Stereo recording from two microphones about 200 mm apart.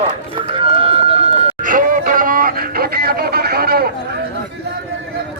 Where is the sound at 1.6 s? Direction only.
40° right (ahead or behind).